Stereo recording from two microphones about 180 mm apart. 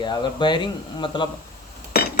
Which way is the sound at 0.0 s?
25° left (ahead or behind).